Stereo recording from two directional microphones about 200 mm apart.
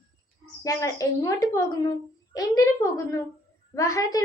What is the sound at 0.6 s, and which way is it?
A child's voice, 15° left (ahead or behind).